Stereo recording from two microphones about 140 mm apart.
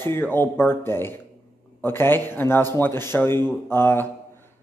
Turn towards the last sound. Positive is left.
turn(degrees=15)  # may be behind; listen again after turning